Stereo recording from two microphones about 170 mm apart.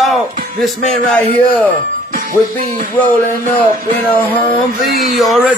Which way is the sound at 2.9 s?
10° left (ahead or behind).